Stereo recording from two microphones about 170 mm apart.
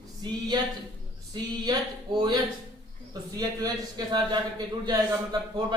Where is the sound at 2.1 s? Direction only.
25° right (ahead or behind).